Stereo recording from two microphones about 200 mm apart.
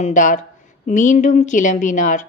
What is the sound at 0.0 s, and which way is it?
A woman's voice, 40° left (ahead or behind).